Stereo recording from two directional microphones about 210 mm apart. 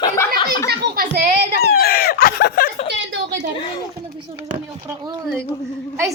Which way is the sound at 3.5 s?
25° left (ahead or behind).